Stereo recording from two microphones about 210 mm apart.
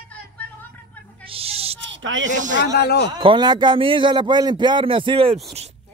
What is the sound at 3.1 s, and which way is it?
A man's voice, 20° right (ahead or behind).